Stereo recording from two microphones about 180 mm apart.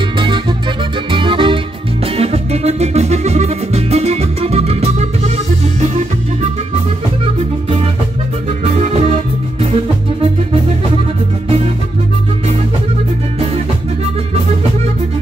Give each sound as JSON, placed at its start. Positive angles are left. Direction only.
{"t": 1.1, "sound": "music", "side_deg": -30}